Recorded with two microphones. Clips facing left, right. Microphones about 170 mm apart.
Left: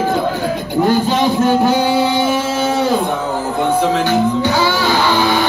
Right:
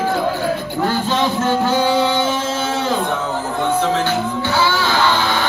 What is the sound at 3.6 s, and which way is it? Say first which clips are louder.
Music: left 3 dB; 15° left (ahead or behind).